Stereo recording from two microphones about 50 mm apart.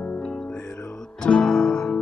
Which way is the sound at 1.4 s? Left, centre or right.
Centre.